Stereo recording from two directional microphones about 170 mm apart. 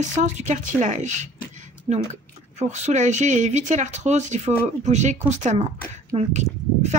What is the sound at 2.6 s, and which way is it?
Speech, 45° right (ahead or behind).